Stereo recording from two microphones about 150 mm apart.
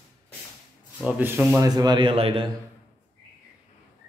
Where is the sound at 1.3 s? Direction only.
15° right (ahead or behind); by 2.5 s 35° right (ahead or behind).